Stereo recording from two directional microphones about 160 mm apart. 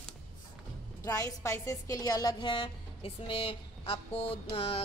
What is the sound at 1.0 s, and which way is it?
A woman's voice, 20° left (ahead or behind).